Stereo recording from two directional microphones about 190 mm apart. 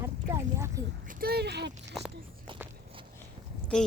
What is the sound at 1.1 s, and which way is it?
Speech, 55° right (ahead or behind).